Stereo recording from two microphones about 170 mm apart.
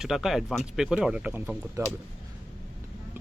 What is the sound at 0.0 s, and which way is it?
Speech, centre (ahead or behind).